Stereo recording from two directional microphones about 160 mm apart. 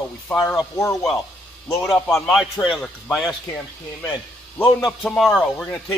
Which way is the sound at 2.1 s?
Centre (ahead or behind).